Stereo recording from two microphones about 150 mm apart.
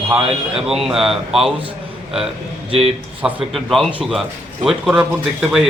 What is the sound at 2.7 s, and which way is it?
Speech, 40° right (ahead or behind).